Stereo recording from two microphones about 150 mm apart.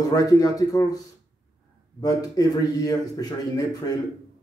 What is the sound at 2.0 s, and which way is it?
Speech, 25° left (ahead or behind).